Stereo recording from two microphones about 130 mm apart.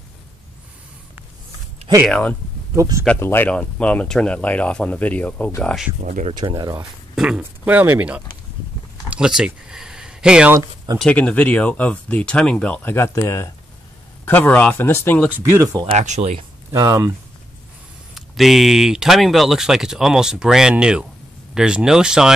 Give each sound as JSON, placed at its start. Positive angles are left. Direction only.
{"t": 2.0, "sound": "speech", "side_deg": 5}
{"t": 2.7, "sound": "speech", "side_deg": -25}
{"t": 3.2, "sound": "speech", "side_deg": 15}
{"t": 6.0, "sound": "speech", "side_deg": -80}
{"t": 6.3, "sound": "speech", "side_deg": -35}
{"t": 7.2, "sound": "speech", "side_deg": -5}
{"t": 9.1, "sound": "a sound", "side_deg": -5}
{"t": 11.0, "sound": "speech", "side_deg": 5}
{"t": 12.9, "sound": "speech", "side_deg": 20}
{"t": 15.3, "sound": "speech", "side_deg": -20}
{"t": 15.9, "sound": "speech", "side_deg": -60}
{"t": 16.3, "sound": "speech", "side_deg": -30}
{"t": 18.1, "sound": "speech", "side_deg": 0}